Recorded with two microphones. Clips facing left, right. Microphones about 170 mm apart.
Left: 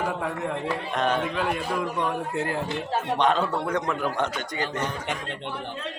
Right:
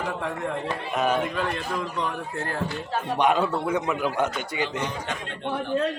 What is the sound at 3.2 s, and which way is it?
A man's voice, 10° right (ahead or behind).